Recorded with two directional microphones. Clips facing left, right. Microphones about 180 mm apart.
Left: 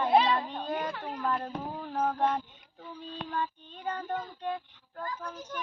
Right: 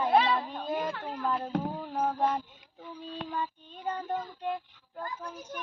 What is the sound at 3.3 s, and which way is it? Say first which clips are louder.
Child singing: left 1 dB; 10° right (ahead or behind).